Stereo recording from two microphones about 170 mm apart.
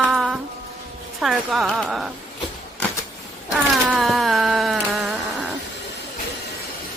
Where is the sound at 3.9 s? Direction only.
Centre (ahead or behind).